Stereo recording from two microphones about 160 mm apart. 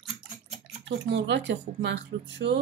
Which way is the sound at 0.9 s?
90° right.